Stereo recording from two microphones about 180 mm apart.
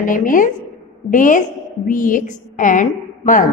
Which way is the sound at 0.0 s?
50° left (ahead or behind).